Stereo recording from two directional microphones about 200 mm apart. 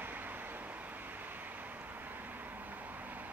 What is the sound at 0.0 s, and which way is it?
Vehicle, 10° right (ahead or behind).